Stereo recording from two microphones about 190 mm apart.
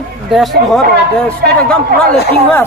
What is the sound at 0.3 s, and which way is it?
Speech, centre (ahead or behind).